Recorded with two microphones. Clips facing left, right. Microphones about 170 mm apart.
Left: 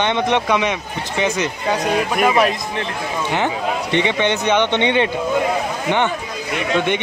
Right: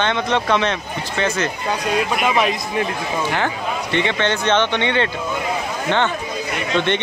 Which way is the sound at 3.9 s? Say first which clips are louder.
Left 1 dB; 15° left (ahead or behind).